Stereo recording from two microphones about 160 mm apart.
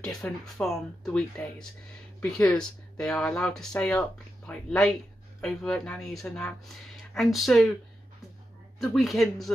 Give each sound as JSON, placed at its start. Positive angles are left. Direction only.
{"t": 0.0, "sound": "speech", "side_deg": 0}
{"t": 8.7, "sound": "speech", "side_deg": 0}